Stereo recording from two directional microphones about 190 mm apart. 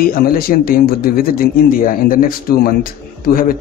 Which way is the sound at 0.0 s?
50° left (ahead or behind).